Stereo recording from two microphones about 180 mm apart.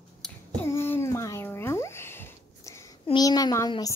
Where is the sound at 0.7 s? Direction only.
15° left (ahead or behind).